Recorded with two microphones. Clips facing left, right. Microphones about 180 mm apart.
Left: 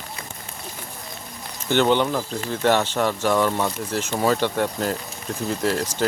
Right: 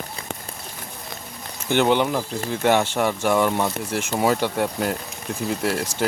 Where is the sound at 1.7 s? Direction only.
10° right (ahead or behind).